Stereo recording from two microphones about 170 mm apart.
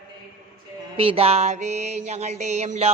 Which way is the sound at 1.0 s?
35° right (ahead or behind).